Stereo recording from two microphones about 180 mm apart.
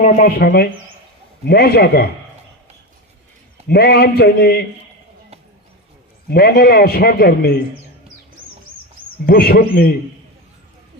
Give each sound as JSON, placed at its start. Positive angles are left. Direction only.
{"t": 0.0, "sound": "a man's voice", "side_deg": 55}
{"t": 3.7, "sound": "a man's voice", "side_deg": 60}
{"t": 6.3, "sound": "a man's voice", "side_deg": 60}
{"t": 9.2, "sound": "a man's voice", "side_deg": 55}